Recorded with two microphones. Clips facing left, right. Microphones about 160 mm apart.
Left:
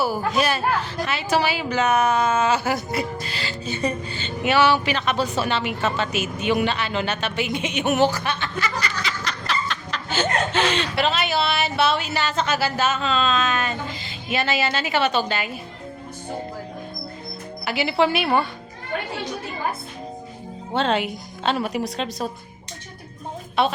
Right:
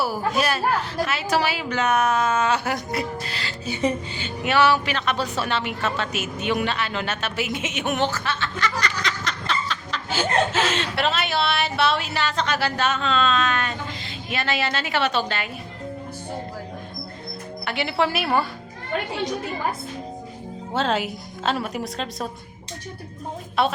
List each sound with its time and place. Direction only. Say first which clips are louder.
0.0 s a woman's voice: left 1 dB; centre (ahead or behind)
3.7 s speech: right 2 dB; 15° right (ahead or behind)
4.4 s a woman's voice: left 1 dB; centre (ahead or behind)
17.7 s a woman's voice: left 3 dB; centre (ahead or behind)
20.7 s a woman's voice: left 2 dB; 5° right (ahead or behind)
23.6 s a woman's voice: left 1 dB; centre (ahead or behind)